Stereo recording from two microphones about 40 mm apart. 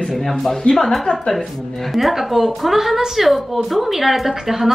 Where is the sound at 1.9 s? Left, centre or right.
Centre.